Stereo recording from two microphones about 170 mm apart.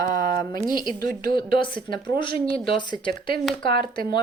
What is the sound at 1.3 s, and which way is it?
Speech, 30° left (ahead or behind).